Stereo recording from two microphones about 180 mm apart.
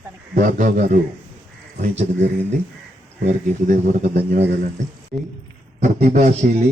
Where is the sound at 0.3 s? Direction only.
45° right (ahead or behind).